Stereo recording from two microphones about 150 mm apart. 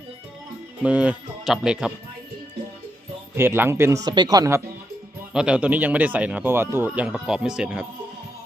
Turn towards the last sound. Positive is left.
turn(degrees=-5)  # may be behind; listen again after turning